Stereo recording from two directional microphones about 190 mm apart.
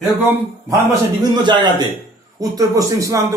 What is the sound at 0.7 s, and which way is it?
A man's voice, 20° right (ahead or behind).